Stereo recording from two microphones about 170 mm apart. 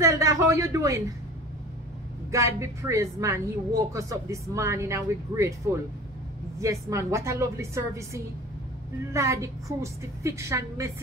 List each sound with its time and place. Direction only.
0.0 s speech: 20° right (ahead or behind)
2.3 s speech: 20° right (ahead or behind)